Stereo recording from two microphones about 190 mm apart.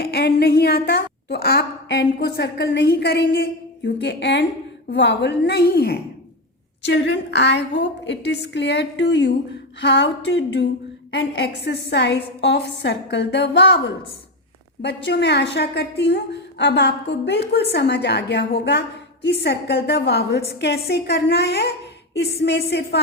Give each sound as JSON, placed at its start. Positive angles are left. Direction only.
{"t": 0.0, "sound": "a woman's voice", "side_deg": 55}
{"t": 6.8, "sound": "a woman's voice", "side_deg": 70}
{"t": 9.8, "sound": "a sound", "side_deg": 65}
{"t": 11.1, "sound": "a woman's voice", "side_deg": 70}